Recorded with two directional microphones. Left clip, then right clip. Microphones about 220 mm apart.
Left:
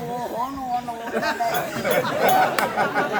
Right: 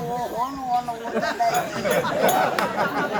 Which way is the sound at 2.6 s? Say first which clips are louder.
Left 1 dB; 35° left (ahead or behind).